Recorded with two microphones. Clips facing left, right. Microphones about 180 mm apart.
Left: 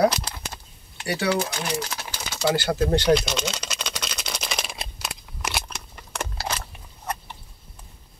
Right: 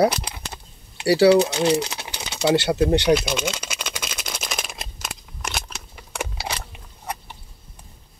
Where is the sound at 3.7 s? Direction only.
5° right (ahead or behind).